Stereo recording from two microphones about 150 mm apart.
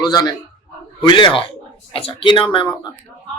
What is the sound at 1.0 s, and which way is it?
Speech, 30° left (ahead or behind).